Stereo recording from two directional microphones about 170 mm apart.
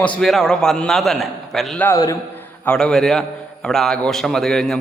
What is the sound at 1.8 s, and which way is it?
Speech, 20° left (ahead or behind).